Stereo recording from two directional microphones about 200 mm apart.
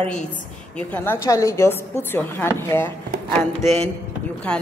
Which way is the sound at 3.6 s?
30° right (ahead or behind).